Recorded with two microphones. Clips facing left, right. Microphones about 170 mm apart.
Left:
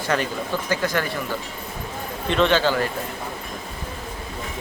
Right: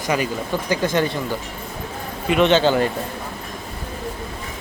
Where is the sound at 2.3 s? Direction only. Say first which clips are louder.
Right 3 dB; 15° right (ahead or behind).